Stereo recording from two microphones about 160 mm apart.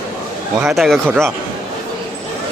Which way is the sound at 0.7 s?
Centre (ahead or behind).